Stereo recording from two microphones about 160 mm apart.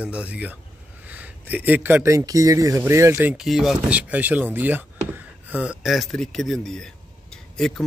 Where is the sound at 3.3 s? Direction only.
Centre (ahead or behind).